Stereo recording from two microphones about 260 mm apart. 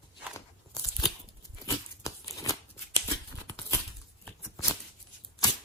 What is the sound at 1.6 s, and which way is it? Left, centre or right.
Scissors, centre.